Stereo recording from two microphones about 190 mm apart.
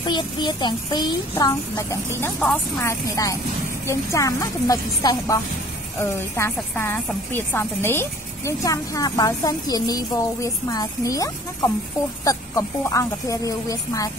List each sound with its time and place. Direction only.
0.0 s a woman's voice: 25° left (ahead or behind)